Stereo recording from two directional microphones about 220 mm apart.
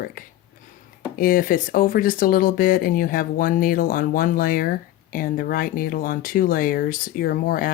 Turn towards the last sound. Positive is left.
turn(degrees=40)  # may be behind; listen again after turning